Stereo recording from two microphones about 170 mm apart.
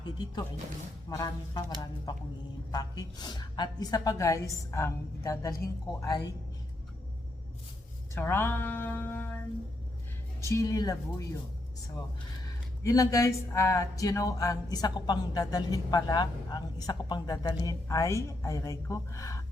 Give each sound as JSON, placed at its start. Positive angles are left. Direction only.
{"t": 1.1, "sound": "speech", "side_deg": 20}
{"t": 8.1, "sound": "speech", "side_deg": 15}
{"t": 10.4, "sound": "speech", "side_deg": 20}
{"t": 12.8, "sound": "speech", "side_deg": 20}